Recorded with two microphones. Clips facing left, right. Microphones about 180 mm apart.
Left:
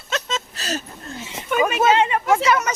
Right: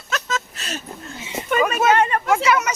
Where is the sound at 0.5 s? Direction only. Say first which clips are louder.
Left 4 dB; 40° left (ahead or behind).